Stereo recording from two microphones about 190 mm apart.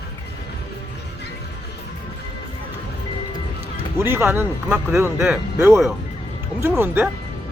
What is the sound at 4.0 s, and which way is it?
Speech, 10° right (ahead or behind).